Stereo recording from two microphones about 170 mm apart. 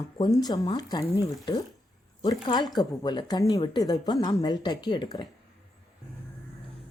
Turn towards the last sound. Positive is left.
turn(degrees=25)  # may be behind; listen again after turning